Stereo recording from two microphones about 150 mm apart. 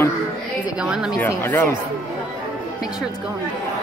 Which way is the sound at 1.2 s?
15° left (ahead or behind).